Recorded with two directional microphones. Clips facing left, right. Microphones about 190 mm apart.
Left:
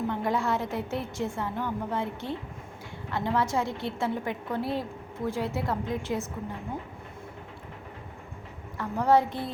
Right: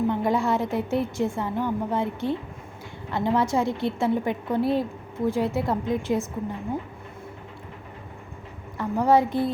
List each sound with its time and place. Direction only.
0.1 s a woman's voice: 15° right (ahead or behind)
8.8 s a woman's voice: 10° right (ahead or behind)